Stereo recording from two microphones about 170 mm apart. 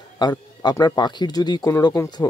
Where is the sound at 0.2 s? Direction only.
20° left (ahead or behind).